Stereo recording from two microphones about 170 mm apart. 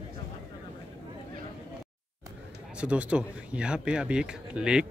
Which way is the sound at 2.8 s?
5° right (ahead or behind).